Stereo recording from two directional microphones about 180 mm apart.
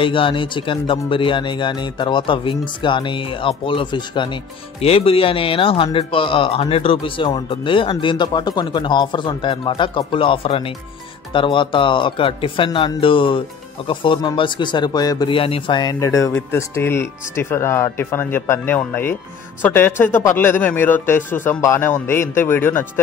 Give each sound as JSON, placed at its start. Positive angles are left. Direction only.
{"t": 0.0, "sound": "speech", "side_deg": 30}